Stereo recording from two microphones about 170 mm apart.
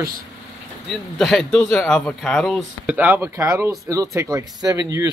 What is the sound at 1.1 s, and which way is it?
Speech, centre (ahead or behind).